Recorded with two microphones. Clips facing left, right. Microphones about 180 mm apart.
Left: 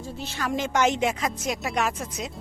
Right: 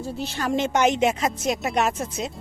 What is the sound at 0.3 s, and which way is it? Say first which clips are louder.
A woman's voice: right 2 dB; 25° right (ahead or behind).